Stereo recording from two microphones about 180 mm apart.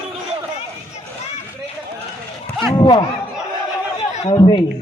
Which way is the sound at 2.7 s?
25° left (ahead or behind).